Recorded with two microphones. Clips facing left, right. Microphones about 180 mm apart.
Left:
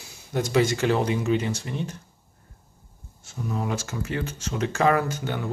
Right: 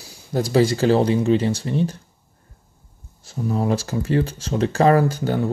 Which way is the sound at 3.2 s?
35° right (ahead or behind).